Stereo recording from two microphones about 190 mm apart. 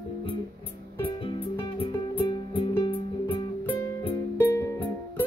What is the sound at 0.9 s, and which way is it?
Music, 30° left (ahead or behind).